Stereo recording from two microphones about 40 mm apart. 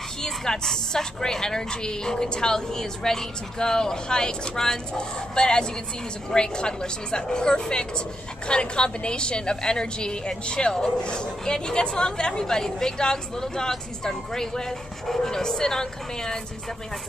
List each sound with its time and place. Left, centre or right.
0.2 s a woman's voice: centre